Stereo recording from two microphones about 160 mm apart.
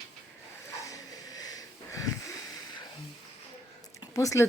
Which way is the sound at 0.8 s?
20° left (ahead or behind).